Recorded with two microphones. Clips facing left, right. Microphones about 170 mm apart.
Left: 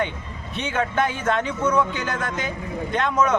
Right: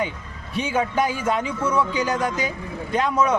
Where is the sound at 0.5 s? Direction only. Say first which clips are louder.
Right 2 dB; 10° right (ahead or behind).